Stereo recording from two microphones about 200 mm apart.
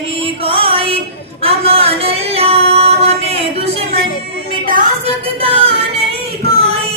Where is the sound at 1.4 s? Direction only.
30° right (ahead or behind).